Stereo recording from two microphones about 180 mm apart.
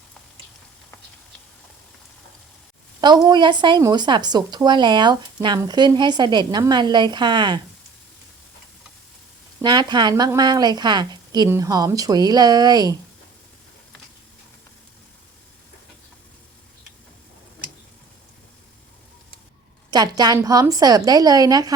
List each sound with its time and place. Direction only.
3.0 s a woman's voice: 25° right (ahead or behind)
9.6 s a woman's voice: 25° right (ahead or behind)
19.9 s a woman's voice: 20° right (ahead or behind)